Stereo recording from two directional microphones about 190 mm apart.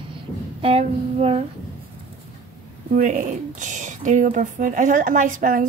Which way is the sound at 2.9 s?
45° right (ahead or behind).